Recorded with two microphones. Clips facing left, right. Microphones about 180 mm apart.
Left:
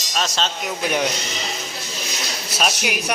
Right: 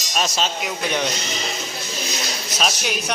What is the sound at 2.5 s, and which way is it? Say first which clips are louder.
Speech: left 1 dB; 10° left (ahead or behind).